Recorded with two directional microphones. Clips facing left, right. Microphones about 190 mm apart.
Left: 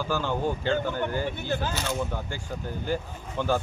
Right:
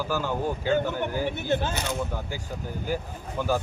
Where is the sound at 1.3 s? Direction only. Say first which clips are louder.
Right 3 dB; 25° right (ahead or behind).